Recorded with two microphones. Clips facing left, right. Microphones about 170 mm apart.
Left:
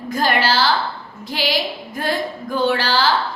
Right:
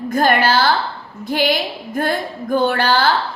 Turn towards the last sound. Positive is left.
turn(degrees=-55)  # may be behind; listen again after turning